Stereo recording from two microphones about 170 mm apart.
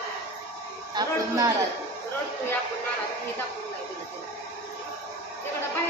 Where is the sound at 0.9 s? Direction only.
20° right (ahead or behind).